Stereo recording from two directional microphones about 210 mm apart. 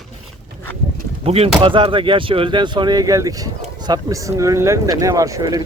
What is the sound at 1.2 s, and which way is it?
Speech, 30° right (ahead or behind).